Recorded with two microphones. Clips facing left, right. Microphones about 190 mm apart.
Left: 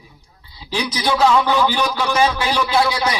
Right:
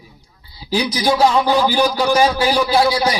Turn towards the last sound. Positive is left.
turn(degrees=-35)  # may be behind; listen again after turning